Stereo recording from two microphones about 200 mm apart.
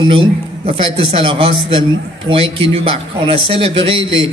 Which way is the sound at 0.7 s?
25° right (ahead or behind).